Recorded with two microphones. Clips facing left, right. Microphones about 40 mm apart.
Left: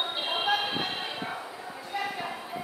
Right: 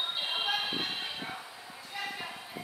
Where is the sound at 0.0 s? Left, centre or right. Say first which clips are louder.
Left 4 dB; centre.